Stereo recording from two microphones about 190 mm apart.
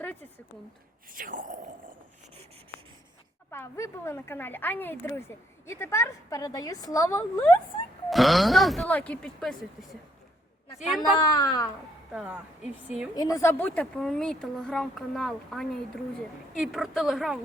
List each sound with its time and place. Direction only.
1.1 s speech: 45° right (ahead or behind)
3.5 s a woman's voice: 15° left (ahead or behind)
8.1 s speech: centre (ahead or behind)
10.8 s speech: centre (ahead or behind)
11.2 s a woman's voice: 20° left (ahead or behind)
12.1 s speech: 5° right (ahead or behind)
13.1 s speech: 15° left (ahead or behind); by 17.3 s centre (ahead or behind)